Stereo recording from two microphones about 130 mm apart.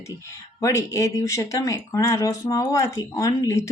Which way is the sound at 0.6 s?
20° left (ahead or behind).